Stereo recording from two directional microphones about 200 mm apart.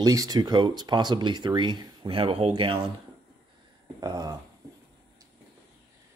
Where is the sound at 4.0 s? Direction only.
20° right (ahead or behind).